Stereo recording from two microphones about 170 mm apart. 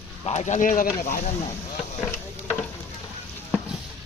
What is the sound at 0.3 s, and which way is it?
Speech, 40° left (ahead or behind).